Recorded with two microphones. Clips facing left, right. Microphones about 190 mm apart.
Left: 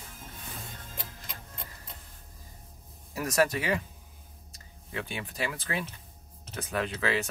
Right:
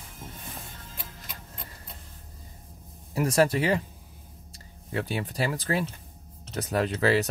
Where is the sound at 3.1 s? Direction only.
30° right (ahead or behind).